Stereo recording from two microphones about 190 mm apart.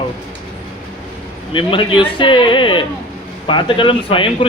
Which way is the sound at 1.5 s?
25° left (ahead or behind).